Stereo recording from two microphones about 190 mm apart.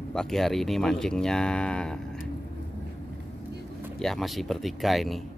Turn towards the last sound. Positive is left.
turn(degrees=0)  # may be behind; listen again after turning